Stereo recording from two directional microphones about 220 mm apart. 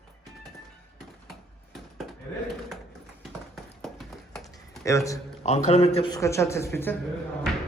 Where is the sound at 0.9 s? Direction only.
Centre (ahead or behind).